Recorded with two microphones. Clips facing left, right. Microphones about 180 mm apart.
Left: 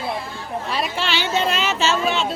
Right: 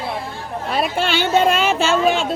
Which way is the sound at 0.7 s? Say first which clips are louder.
Right 5 dB; 50° right (ahead or behind).